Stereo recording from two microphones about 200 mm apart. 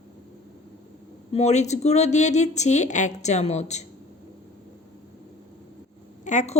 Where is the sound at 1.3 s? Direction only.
35° left (ahead or behind).